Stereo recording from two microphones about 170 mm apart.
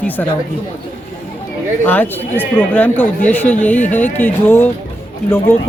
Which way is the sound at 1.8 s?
10° left (ahead or behind).